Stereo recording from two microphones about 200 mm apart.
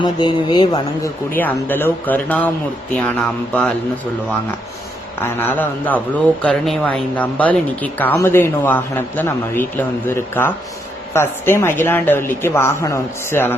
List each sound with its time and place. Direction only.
0.0 s speech: 20° left (ahead or behind)
1.4 s a man's voice: 10° left (ahead or behind)
5.2 s a man's voice: 10° left (ahead or behind)